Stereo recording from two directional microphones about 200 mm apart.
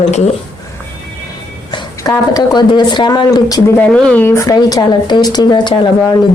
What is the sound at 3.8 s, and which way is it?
Speech, 5° left (ahead or behind).